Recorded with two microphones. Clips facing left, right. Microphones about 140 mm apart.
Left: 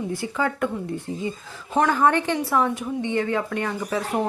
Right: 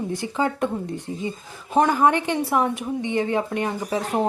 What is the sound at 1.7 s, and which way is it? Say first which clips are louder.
A woman's voice: right 1 dB; 20° right (ahead or behind).